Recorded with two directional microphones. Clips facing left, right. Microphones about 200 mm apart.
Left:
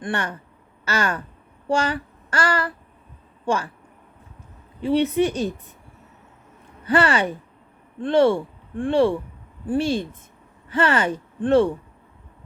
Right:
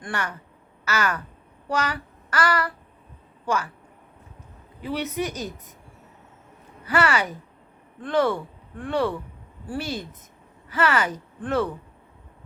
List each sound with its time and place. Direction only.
0.0 s speech: 25° left (ahead or behind)
4.8 s speech: 30° left (ahead or behind)
6.8 s speech: 30° left (ahead or behind)